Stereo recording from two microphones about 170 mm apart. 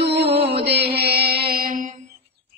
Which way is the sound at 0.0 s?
80° right.